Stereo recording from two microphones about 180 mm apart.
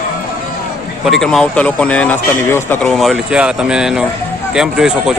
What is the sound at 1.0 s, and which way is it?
Speech, centre (ahead or behind).